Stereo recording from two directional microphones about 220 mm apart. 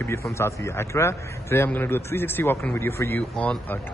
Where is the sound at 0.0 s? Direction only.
10° left (ahead or behind).